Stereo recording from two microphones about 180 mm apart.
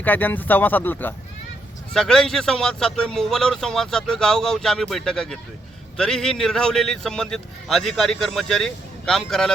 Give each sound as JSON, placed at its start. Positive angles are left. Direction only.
{"t": 0.0, "sound": "a man's voice", "side_deg": 10}